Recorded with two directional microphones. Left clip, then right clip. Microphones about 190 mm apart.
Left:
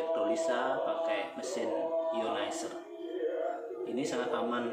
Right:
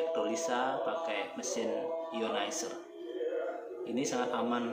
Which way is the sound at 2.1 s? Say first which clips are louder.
Left 1 dB; 25° right (ahead or behind).